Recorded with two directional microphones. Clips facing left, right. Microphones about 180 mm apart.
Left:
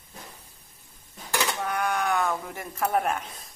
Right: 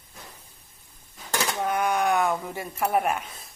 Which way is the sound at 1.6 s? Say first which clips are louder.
Right 6 dB; 20° right (ahead or behind).